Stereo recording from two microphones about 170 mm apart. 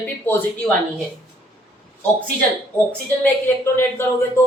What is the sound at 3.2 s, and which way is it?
Speech, 15° left (ahead or behind).